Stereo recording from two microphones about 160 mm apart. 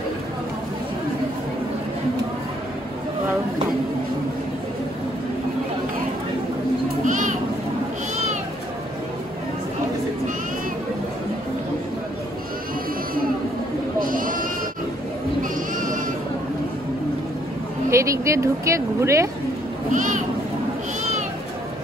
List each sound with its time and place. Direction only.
7.1 s children playing: 55° right (ahead or behind)
13.9 s sheep: 60° right (ahead or behind)
17.8 s a woman's voice: 20° right (ahead or behind)
19.9 s a sound: 55° right (ahead or behind)